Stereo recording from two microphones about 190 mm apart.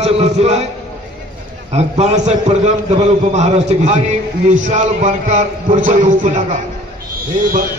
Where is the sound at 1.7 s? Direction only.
35° right (ahead or behind).